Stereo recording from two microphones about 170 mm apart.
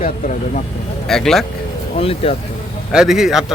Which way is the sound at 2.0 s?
35° left (ahead or behind).